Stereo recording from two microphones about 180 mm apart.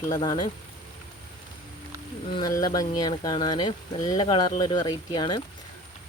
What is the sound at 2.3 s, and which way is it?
Speech, 20° left (ahead or behind).